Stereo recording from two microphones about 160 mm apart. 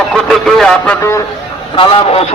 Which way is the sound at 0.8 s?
15° left (ahead or behind).